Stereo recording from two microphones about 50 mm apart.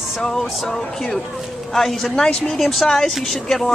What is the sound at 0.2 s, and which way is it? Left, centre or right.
Speech, centre.